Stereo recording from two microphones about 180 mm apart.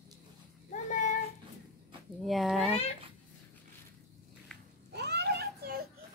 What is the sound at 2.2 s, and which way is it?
Speech, centre (ahead or behind).